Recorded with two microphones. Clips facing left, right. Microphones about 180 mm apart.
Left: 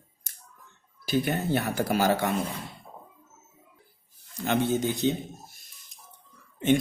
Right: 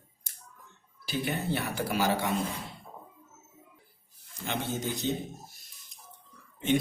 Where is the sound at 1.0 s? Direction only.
45° left (ahead or behind).